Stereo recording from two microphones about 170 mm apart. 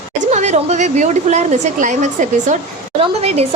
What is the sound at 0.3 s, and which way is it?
A woman's voice, 40° right (ahead or behind).